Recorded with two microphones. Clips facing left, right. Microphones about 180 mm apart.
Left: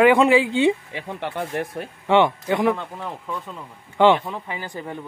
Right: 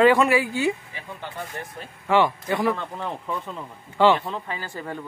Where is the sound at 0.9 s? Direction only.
75° left (ahead or behind).